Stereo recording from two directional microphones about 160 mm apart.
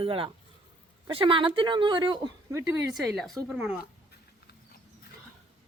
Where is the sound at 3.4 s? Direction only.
5° right (ahead or behind).